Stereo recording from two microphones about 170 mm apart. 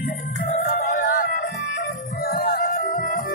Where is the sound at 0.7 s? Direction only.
55° left (ahead or behind).